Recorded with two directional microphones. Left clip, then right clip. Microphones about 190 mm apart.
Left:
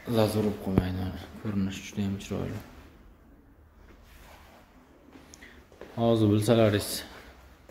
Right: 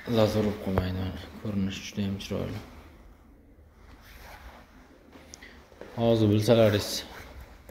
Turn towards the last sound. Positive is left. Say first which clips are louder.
# right 2 dB
turn(degrees=20)  # may be behind; listen again after turning